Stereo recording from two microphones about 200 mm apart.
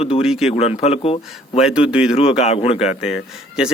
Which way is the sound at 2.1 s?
30° left (ahead or behind).